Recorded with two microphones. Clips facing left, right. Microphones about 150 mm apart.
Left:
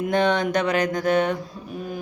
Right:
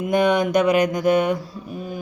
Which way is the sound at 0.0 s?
10° right (ahead or behind).